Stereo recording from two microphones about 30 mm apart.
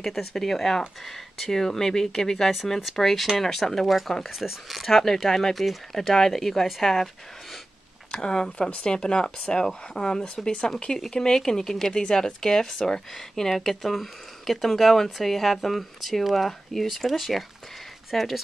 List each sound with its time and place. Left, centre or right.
0.0 s speech: centre
4.4 s speech: centre
4.8 s speech: centre
8.1 s speech: left
11.9 s speech: left; by 18.3 s centre